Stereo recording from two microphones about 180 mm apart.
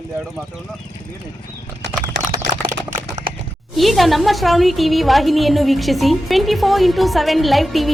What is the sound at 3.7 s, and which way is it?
A woman's voice, centre (ahead or behind).